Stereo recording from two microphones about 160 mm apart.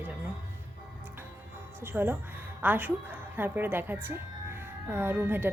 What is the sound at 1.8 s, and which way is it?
A woman's voice, 15° right (ahead or behind).